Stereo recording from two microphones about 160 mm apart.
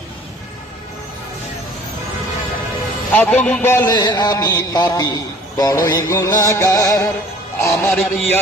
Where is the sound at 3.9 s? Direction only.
25° left (ahead or behind).